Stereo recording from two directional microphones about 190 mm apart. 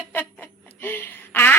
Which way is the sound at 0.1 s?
10° left (ahead or behind).